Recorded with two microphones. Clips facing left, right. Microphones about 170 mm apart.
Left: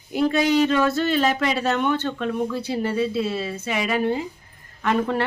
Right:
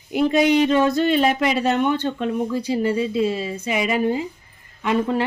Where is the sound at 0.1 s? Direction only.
15° right (ahead or behind).